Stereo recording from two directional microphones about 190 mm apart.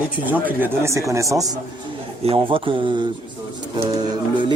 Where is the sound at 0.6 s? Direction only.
15° right (ahead or behind).